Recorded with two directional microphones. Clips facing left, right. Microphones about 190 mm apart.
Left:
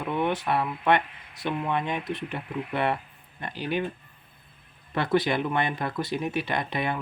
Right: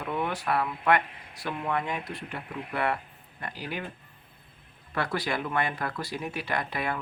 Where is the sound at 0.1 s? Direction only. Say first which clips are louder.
Left 3 dB; 25° left (ahead or behind).